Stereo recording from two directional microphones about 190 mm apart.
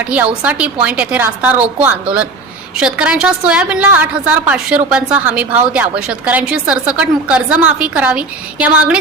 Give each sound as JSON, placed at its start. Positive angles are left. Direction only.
{"t": 0.0, "sound": "a woman's voice", "side_deg": -10}